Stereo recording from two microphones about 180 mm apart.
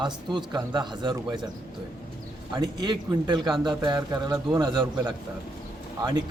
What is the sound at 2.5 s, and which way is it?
Speech, 25° right (ahead or behind).